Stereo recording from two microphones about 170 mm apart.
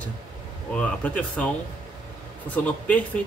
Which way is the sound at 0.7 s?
5° left (ahead or behind).